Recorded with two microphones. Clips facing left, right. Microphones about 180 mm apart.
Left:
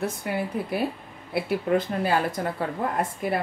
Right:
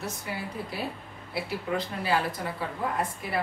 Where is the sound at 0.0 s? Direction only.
55° left (ahead or behind).